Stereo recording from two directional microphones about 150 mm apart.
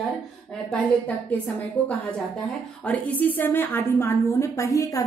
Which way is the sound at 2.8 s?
10° left (ahead or behind).